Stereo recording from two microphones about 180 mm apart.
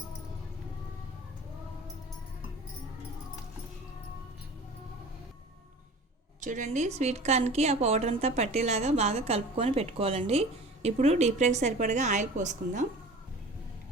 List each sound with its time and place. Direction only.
6.4 s a woman's voice: 40° right (ahead or behind)